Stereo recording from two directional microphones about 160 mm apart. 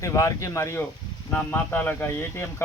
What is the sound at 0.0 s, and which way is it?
Speech, 20° left (ahead or behind).